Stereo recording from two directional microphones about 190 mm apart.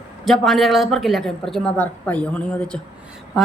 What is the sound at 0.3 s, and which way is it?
A woman's voice, centre (ahead or behind).